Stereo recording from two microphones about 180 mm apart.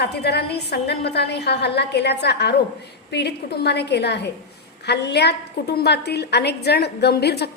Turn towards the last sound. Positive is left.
turn(degrees=65)  # may be behind; listen again after turning